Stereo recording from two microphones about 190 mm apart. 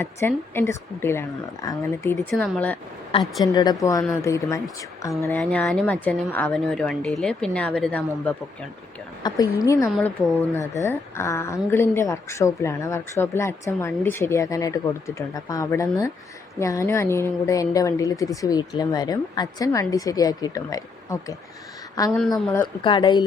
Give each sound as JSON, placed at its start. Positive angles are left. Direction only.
{"t": 0.0, "sound": "a woman's voice", "side_deg": 15}
{"t": 2.3, "sound": "a woman's voice", "side_deg": 5}
{"t": 3.4, "sound": "a woman's voice", "side_deg": 20}
{"t": 9.2, "sound": "a woman's voice", "side_deg": 20}
{"t": 9.9, "sound": "a woman's voice", "side_deg": 0}
{"t": 10.5, "sound": "a woman's voice", "side_deg": 15}